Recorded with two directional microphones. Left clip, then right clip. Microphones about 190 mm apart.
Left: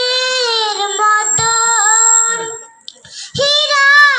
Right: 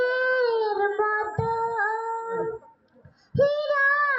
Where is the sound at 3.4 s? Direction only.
20° left (ahead or behind).